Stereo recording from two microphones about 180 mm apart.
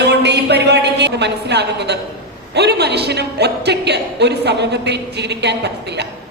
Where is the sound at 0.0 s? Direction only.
70° right (ahead or behind).